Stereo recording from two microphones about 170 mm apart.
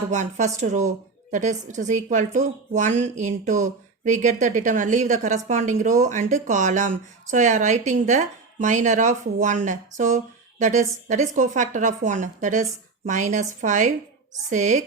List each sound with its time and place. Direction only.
0.1 s a woman's voice: 45° right (ahead or behind)